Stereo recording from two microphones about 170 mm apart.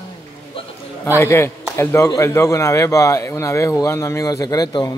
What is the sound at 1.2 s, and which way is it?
A man's voice, 15° left (ahead or behind).